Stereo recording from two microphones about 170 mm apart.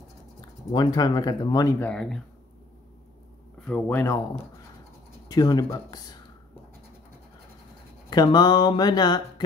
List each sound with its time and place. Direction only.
0.7 s speech: 25° left (ahead or behind)
1.8 s speech: 5° left (ahead or behind)
3.6 s speech: 10° left (ahead or behind)
5.3 s speech: 20° left (ahead or behind)
8.1 s speech: 25° left (ahead or behind)